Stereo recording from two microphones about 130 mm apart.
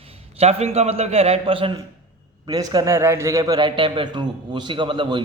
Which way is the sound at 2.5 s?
30° right (ahead or behind).